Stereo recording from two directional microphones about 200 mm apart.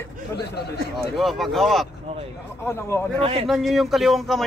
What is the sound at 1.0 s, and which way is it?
Speech, centre (ahead or behind).